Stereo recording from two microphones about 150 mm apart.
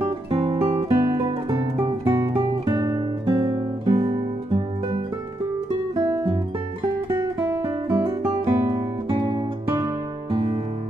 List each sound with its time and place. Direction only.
0.3 s guitar: 35° right (ahead or behind)
0.7 s music: 20° right (ahead or behind)
3.3 s guitar: 35° right (ahead or behind)
3.5 s music: 25° right (ahead or behind)
7.1 s guitar: 15° right (ahead or behind)
8.1 s music: 20° right (ahead or behind)